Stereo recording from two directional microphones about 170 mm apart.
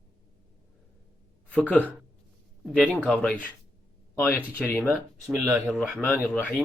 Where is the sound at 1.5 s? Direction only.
10° left (ahead or behind).